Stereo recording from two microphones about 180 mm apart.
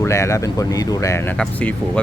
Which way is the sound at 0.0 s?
15° left (ahead or behind).